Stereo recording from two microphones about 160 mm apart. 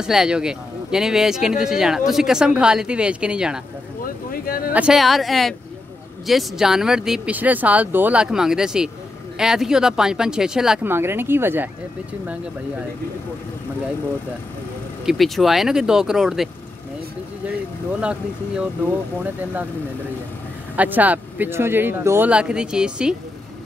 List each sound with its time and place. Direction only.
0.0 s speech: 5° right (ahead or behind)
4.3 s speech: 65° left (ahead or behind)
4.7 s speech: 5° right (ahead or behind)
10.9 s speech: 15° right (ahead or behind)
15.0 s speech: centre (ahead or behind)
20.7 s speech: 10° right (ahead or behind)